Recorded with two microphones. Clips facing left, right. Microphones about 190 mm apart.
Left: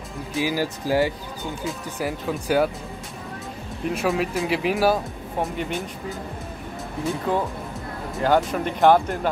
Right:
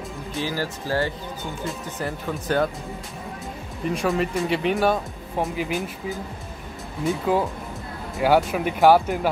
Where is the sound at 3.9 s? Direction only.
5° left (ahead or behind).